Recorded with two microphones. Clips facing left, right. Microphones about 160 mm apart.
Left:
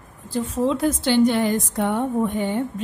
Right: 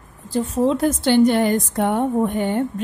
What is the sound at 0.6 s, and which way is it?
A woman's voice, 50° right (ahead or behind).